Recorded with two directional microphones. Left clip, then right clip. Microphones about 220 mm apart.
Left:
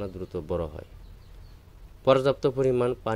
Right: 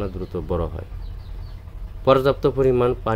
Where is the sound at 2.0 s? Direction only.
30° left (ahead or behind).